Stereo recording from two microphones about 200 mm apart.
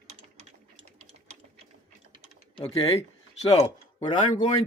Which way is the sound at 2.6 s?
25° left (ahead or behind).